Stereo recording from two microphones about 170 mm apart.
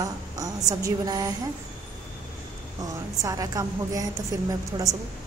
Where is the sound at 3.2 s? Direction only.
20° right (ahead or behind).